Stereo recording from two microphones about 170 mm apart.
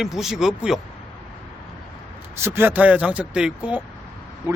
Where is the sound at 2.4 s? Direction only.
15° right (ahead or behind).